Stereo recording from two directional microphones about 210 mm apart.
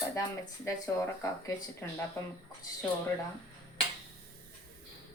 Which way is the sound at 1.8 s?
10° left (ahead or behind).